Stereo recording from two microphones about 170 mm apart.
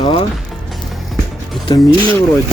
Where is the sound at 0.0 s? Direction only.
30° left (ahead or behind).